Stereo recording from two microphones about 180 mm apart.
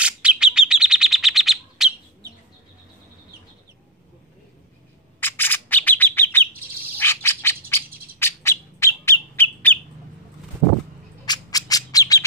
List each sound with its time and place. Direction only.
0.0 s bird: 5° right (ahead or behind)
5.2 s bird: 10° left (ahead or behind)
11.2 s squawk: 20° left (ahead or behind)